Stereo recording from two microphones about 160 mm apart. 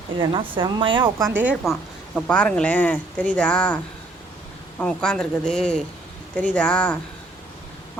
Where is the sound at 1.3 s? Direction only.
10° right (ahead or behind).